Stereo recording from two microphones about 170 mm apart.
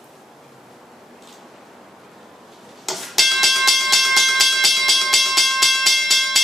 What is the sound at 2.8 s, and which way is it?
Music, centre (ahead or behind).